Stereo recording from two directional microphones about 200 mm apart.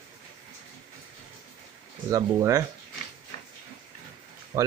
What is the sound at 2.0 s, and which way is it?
Speech, 15° right (ahead or behind).